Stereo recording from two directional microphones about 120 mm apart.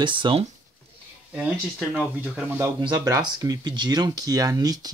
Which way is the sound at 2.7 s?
35° right (ahead or behind).